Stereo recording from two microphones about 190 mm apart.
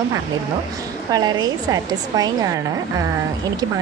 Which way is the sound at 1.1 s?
20° right (ahead or behind).